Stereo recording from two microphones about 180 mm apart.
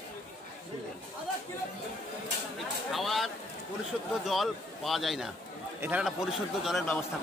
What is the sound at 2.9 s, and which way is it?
Speech, centre (ahead or behind).